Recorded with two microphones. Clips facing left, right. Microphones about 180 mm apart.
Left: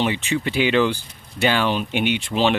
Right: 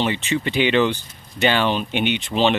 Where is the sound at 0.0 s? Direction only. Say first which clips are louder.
Even; 10° left (ahead or behind).